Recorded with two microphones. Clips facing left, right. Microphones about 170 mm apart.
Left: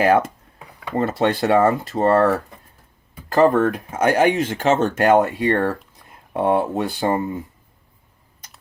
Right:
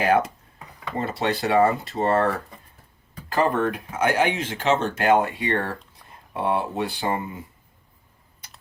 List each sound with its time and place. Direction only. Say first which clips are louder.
0.0 s speech: left 4 dB; 50° left (ahead or behind)